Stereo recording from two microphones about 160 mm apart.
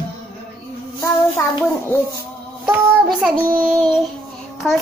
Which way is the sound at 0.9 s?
15° left (ahead or behind).